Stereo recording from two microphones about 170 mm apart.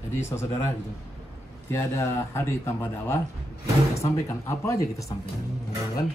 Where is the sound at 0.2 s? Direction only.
15° left (ahead or behind).